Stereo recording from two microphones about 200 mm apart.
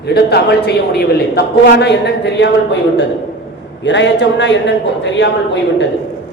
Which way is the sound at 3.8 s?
60° left (ahead or behind).